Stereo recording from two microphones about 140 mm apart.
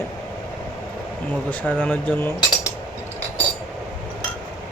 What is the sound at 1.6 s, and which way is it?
Speech, 10° left (ahead or behind).